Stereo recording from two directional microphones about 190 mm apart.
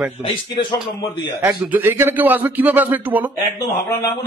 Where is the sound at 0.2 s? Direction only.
25° left (ahead or behind).